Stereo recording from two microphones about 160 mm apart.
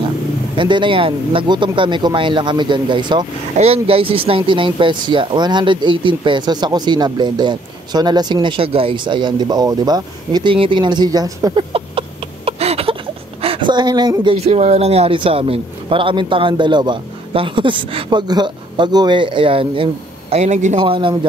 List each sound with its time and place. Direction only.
0.6 s speech: 30° right (ahead or behind)
12.4 s a sound: 40° right (ahead or behind)
13.4 s speech: 35° right (ahead or behind)
14.3 s a man's voice: 40° right (ahead or behind)
20.8 s a man's voice: 30° right (ahead or behind)